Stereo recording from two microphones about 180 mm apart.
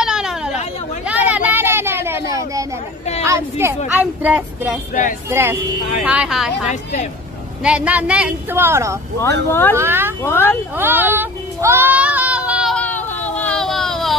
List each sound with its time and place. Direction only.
0.0 s a sound: 5° right (ahead or behind)
3.3 s speech: 15° right (ahead or behind)
6.7 s a woman's voice: 40° left (ahead or behind)
7.6 s speech: 5° right (ahead or behind)
9.5 s speech: 10° left (ahead or behind)
9.8 s speech: 10° right (ahead or behind)
10.2 s speech: 10° left (ahead or behind)
10.8 s child singing: 10° right (ahead or behind)
13.4 s a sound: 5° left (ahead or behind)